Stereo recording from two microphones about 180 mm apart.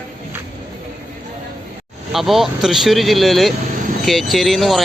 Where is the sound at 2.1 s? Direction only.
Centre (ahead or behind).